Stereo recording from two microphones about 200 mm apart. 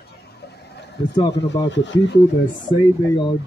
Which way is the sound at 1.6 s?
65° left (ahead or behind).